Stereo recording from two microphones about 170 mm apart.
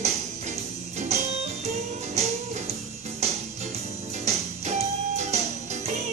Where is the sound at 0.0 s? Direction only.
40° right (ahead or behind).